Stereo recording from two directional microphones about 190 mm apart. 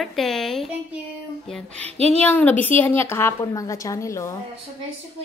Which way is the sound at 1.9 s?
35° right (ahead or behind).